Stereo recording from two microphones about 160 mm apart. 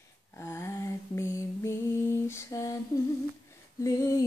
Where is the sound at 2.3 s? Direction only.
20° left (ahead or behind).